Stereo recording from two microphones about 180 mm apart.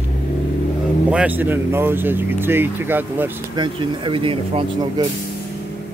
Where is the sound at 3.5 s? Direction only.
25° right (ahead or behind).